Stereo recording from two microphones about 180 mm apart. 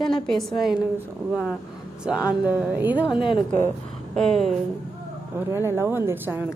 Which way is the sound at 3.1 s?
30° left (ahead or behind).